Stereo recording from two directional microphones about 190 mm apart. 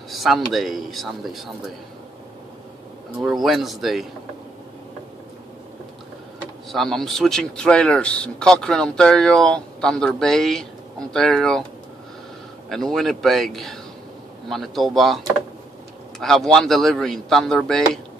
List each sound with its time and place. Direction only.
0.1 s a sound: centre (ahead or behind)
0.5 s speech: centre (ahead or behind)
3.2 s speech: centre (ahead or behind)
6.7 s speech: centre (ahead or behind)
12.6 s speech: centre (ahead or behind)